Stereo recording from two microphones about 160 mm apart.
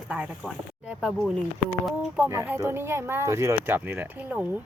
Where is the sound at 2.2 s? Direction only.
10° right (ahead or behind).